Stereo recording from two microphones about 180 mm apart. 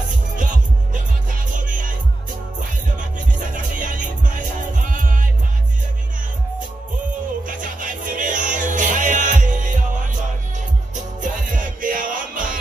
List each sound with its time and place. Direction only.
0.4 s music: 45° right (ahead or behind)
3.5 s music: 45° right (ahead or behind)
7.4 s music: 45° right (ahead or behind)
11.0 s music: 45° right (ahead or behind)